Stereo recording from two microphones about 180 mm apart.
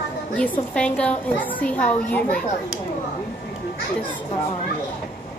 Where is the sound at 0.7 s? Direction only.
5° left (ahead or behind).